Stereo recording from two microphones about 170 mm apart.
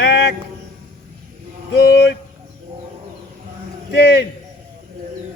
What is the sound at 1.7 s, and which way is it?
Speech, 80° left.